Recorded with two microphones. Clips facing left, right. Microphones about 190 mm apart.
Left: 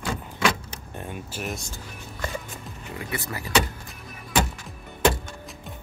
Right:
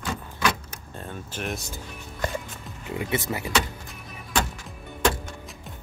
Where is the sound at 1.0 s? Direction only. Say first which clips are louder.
Even; 10° left (ahead or behind).